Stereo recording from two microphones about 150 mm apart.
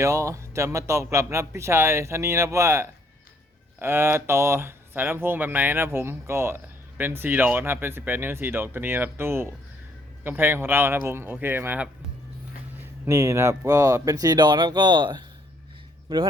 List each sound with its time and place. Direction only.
0.0 s speech: 20° right (ahead or behind)